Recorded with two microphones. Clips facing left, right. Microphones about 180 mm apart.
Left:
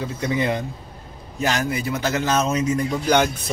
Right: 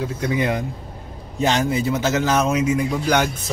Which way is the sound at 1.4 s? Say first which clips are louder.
Right 4 dB; 25° right (ahead or behind).